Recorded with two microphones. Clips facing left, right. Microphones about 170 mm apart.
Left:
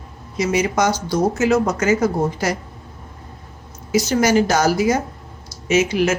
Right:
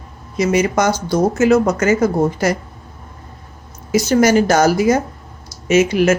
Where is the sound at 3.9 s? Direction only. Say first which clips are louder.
Right 3 dB; 55° right (ahead or behind).